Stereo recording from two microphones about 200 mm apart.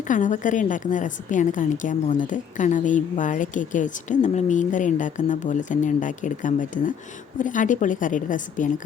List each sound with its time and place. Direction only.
0.1 s a woman's voice: 40° left (ahead or behind)